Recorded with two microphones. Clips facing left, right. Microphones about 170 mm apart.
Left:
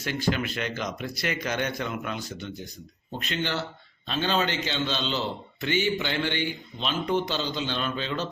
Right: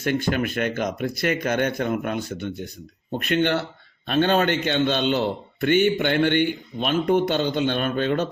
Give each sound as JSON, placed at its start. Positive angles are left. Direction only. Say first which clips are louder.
{"t": 0.0, "sound": "a man's voice", "louder": "right 5 dB", "side_deg": -55}